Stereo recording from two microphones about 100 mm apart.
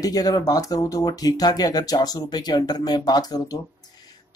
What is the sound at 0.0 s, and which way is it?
Speech, 40° left (ahead or behind).